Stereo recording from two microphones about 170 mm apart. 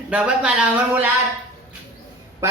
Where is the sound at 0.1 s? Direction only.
5° right (ahead or behind).